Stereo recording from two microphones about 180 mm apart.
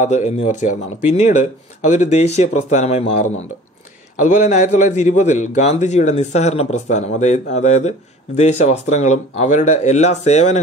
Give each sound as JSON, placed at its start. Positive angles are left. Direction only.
{"t": 0.0, "sound": "speech", "side_deg": 40}